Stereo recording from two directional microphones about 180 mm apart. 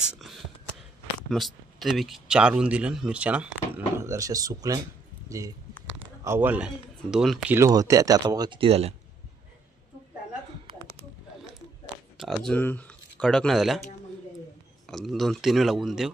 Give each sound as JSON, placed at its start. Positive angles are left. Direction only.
{"t": 0.0, "sound": "whispering", "side_deg": 0}
{"t": 1.3, "sound": "speech", "side_deg": 0}
{"t": 12.2, "sound": "speech", "side_deg": 0}
{"t": 14.9, "sound": "speech", "side_deg": 0}